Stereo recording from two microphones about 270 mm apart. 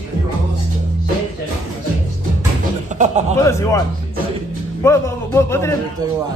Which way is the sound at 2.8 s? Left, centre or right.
Right.